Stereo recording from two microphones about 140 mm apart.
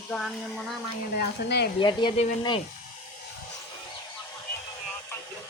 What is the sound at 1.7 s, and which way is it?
Speech, 35° left (ahead or behind).